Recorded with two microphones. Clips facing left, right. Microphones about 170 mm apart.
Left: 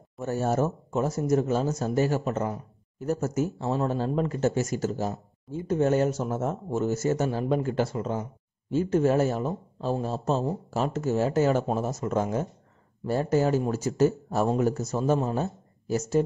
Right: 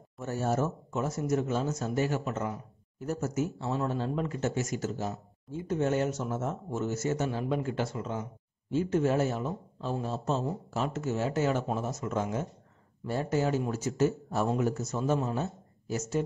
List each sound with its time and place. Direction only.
0.3 s a man's voice: 40° left (ahead or behind)